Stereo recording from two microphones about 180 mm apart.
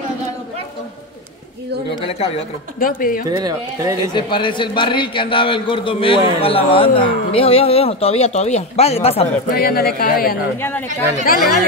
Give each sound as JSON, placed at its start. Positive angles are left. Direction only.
{"t": 2.0, "sound": "speech", "side_deg": 30}
{"t": 2.8, "sound": "speech", "side_deg": 50}
{"t": 3.3, "sound": "speech", "side_deg": -20}
{"t": 4.1, "sound": "a man's voice", "side_deg": 25}
{"t": 9.5, "sound": "speech", "side_deg": 55}